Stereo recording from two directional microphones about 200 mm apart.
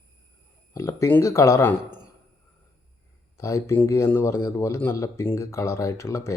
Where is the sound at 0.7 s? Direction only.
15° left (ahead or behind).